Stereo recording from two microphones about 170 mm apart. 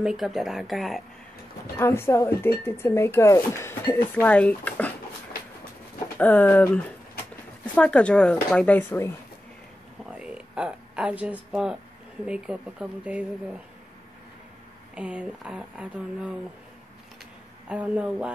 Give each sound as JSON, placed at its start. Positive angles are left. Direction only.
{"t": 0.0, "sound": "speech", "side_deg": -5}
{"t": 1.8, "sound": "speech", "side_deg": 15}
{"t": 6.1, "sound": "speech", "side_deg": 10}
{"t": 10.1, "sound": "speech", "side_deg": -5}
{"t": 15.0, "sound": "speech", "side_deg": -5}
{"t": 17.6, "sound": "speech", "side_deg": -5}